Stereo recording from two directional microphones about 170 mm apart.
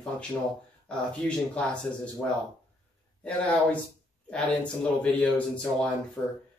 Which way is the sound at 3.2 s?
5° left (ahead or behind).